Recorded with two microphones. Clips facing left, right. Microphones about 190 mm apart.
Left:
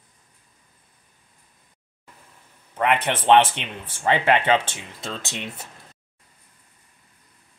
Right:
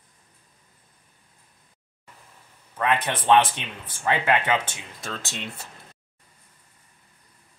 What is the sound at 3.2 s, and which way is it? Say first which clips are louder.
Speech: left 3 dB; 25° left (ahead or behind).